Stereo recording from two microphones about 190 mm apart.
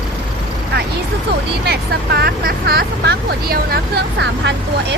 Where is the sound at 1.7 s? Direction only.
55° right (ahead or behind).